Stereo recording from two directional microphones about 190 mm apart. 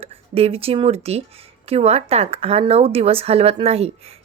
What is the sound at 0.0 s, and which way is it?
Speech, 30° right (ahead or behind).